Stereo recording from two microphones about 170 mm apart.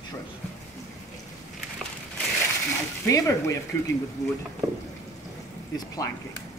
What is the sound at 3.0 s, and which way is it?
Speech, 15° left (ahead or behind).